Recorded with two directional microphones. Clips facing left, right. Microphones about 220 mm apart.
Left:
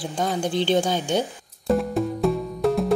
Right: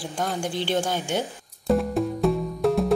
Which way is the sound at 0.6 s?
20° left (ahead or behind).